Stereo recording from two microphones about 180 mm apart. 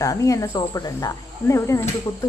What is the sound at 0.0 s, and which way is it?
Speech, 20° left (ahead or behind).